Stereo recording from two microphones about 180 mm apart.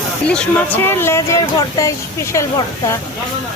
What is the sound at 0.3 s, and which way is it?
Speech, 5° left (ahead or behind).